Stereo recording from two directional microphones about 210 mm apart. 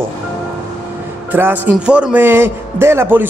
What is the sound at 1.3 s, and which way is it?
A man's voice, 10° right (ahead or behind).